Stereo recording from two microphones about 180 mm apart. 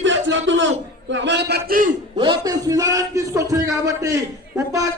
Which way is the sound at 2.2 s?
25° right (ahead or behind).